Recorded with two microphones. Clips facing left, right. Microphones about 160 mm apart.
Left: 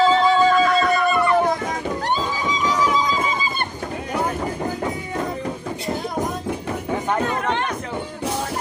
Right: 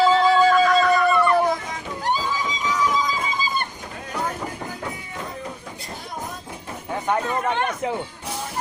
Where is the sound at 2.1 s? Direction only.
70° left (ahead or behind).